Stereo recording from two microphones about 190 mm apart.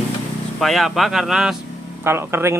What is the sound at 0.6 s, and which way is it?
Speech, centre (ahead or behind).